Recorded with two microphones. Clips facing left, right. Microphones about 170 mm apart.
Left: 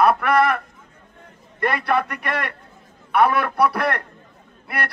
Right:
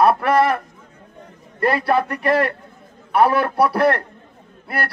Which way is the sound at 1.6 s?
30° right (ahead or behind).